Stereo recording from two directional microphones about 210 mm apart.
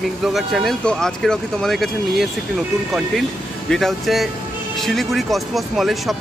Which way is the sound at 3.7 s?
Centre (ahead or behind).